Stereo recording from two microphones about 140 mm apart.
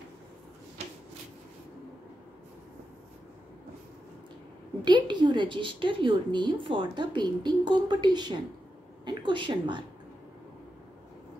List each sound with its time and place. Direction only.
4.8 s a woman's voice: 35° right (ahead or behind)